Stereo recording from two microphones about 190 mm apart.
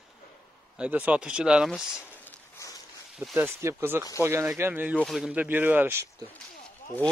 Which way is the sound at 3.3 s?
10° right (ahead or behind).